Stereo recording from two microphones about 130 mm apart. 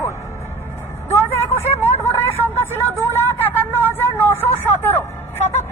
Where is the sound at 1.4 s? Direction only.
20° left (ahead or behind).